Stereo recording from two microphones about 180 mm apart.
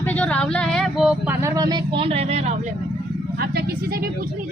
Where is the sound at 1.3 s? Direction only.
15° right (ahead or behind); by 2.5 s 35° right (ahead or behind).